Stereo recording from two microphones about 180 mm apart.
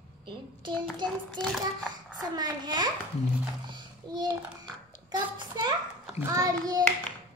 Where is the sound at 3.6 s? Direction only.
25° right (ahead or behind).